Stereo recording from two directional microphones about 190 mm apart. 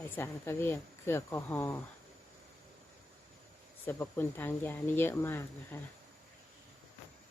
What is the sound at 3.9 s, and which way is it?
Speech, 10° left (ahead or behind).